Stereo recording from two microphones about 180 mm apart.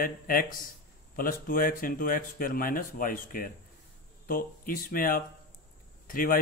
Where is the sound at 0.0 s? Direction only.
50° left (ahead or behind).